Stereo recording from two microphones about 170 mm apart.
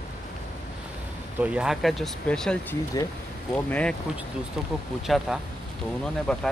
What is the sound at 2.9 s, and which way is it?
Speech, 20° left (ahead or behind).